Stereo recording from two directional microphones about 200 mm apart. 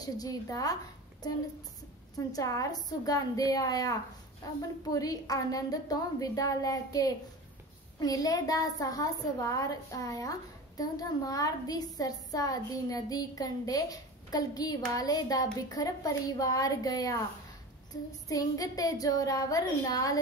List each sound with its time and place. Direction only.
0.0 s a woman's voice: 20° left (ahead or behind)
2.1 s a woman's voice: 15° left (ahead or behind)
18.3 s a woman's voice: 15° left (ahead or behind)